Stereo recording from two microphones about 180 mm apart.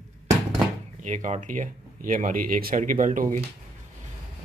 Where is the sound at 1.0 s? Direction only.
45° right (ahead or behind).